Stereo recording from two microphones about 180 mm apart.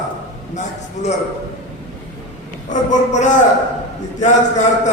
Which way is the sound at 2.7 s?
45° left (ahead or behind).